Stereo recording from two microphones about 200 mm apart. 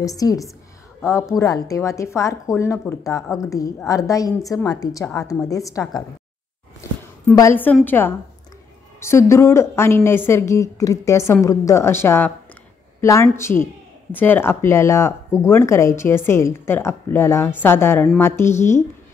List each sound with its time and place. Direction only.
0.0 s a woman's voice: 15° left (ahead or behind)